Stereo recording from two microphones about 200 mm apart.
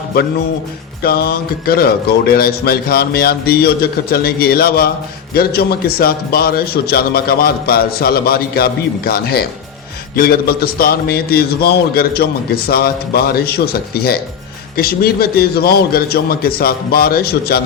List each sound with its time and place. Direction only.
1.0 s a man's voice: 50° left (ahead or behind)